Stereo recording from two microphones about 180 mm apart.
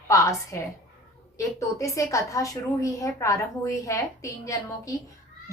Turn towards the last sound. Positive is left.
turn(degrees=15)  # may be behind; listen again after turning